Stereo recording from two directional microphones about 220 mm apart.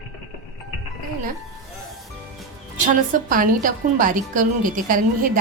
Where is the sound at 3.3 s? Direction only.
40° right (ahead or behind).